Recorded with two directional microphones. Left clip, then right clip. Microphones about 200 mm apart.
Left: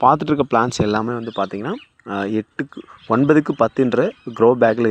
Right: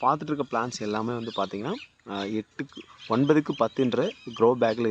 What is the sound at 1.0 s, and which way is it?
Speech, 20° left (ahead or behind).